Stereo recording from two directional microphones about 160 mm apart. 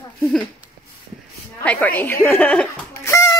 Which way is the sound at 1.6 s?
10° left (ahead or behind).